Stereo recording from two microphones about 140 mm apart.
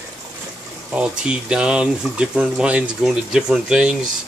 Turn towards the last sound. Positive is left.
turn(degrees=-5)  # may be behind; listen again after turning